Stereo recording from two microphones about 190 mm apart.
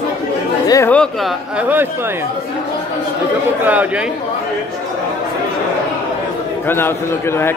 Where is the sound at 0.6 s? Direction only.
20° left (ahead or behind).